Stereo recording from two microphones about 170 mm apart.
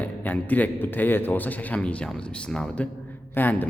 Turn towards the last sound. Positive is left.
turn(degrees=10)  # may be behind; listen again after turning